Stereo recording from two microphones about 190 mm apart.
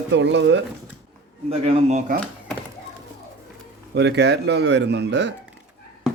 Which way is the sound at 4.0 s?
65° right (ahead or behind).